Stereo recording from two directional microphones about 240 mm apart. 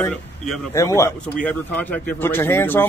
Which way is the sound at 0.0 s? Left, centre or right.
Centre.